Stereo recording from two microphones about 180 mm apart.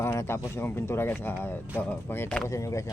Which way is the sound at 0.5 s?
15° left (ahead or behind).